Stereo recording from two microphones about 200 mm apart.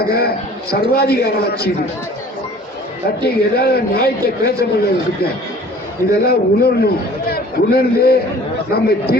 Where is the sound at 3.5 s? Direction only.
50° left (ahead or behind).